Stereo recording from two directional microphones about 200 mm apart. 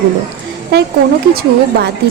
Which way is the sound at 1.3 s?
50° right (ahead or behind).